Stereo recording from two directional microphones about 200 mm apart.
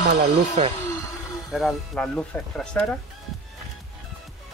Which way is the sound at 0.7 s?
15° left (ahead or behind).